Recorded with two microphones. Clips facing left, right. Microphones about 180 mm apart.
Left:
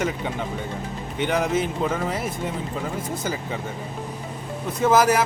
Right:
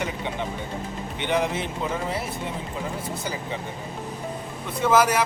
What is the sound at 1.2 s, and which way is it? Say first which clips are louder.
Speech: left 3 dB; 45° left (ahead or behind).